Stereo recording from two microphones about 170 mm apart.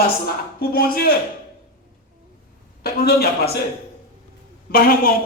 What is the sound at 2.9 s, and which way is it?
Speech, 65° left (ahead or behind).